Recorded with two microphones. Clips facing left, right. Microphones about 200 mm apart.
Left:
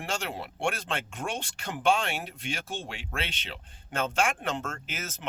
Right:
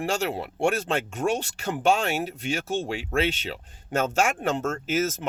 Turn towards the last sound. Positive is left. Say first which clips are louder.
# right 14 dB
turn(degrees=-45)  # may be behind; listen again after turning